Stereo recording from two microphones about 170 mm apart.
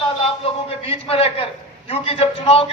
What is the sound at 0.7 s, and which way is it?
A man's voice, 35° left (ahead or behind).